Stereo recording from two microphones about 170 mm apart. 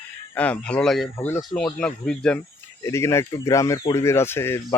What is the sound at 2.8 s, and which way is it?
Speech, 15° left (ahead or behind).